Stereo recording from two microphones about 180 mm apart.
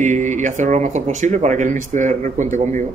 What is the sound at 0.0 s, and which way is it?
Speech, 45° right (ahead or behind).